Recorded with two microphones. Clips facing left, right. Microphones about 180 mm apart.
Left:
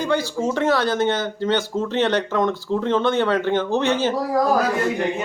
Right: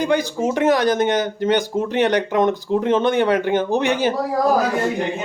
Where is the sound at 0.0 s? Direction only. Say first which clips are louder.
Right 2 dB; 15° right (ahead or behind).